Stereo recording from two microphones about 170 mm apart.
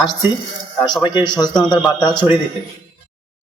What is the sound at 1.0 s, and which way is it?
Speech, 25° left (ahead or behind).